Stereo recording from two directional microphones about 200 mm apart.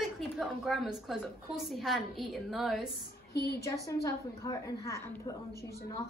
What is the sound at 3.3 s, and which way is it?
Speech, 55° left (ahead or behind).